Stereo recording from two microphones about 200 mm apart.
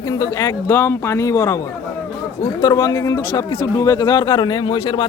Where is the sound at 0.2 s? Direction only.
20° left (ahead or behind).